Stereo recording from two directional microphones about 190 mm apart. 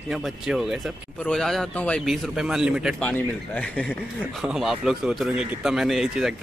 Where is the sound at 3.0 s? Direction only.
5° left (ahead or behind).